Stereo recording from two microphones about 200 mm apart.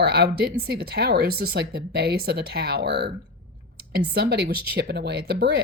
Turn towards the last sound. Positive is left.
turn(degrees=-55)  # may be behind; listen again after turning